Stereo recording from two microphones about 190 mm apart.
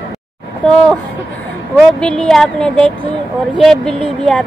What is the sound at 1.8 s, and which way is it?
Speech, 5° left (ahead or behind).